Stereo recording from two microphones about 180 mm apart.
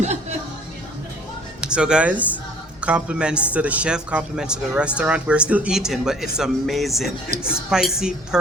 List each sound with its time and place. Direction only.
0.0 s music: 40° right (ahead or behind)
1.6 s a woman's voice: 5° right (ahead or behind)